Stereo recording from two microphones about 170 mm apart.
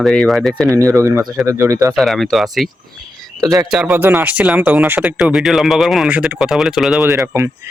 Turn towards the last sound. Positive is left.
turn(degrees=-5)  # may be behind; listen again after turning